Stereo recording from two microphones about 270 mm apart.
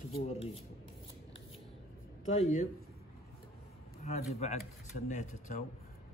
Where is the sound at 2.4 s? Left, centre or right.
Left.